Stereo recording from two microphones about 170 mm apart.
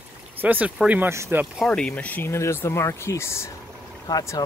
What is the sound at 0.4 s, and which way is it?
Speech, 10° right (ahead or behind).